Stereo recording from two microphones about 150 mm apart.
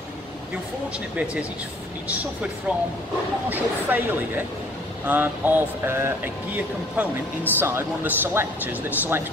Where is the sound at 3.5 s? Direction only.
10° right (ahead or behind).